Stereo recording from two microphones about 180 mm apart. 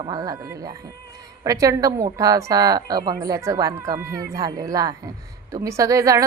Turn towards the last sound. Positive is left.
turn(degrees=-20)  # may be behind; listen again after turning